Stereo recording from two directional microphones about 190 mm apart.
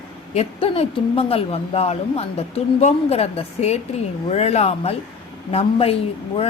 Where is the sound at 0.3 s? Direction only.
30° left (ahead or behind).